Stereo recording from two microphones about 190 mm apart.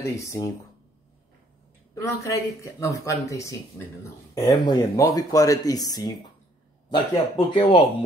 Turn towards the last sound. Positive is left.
turn(degrees=30)  # may be behind; listen again after turning